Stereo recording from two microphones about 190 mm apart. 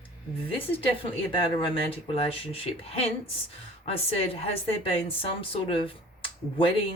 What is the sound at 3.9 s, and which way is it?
A woman's voice, 30° left (ahead or behind).